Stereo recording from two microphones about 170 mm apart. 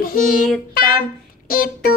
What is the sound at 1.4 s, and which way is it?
Child singing, 60° left (ahead or behind).